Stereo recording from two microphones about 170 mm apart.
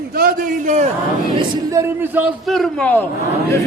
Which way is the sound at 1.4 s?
25° right (ahead or behind).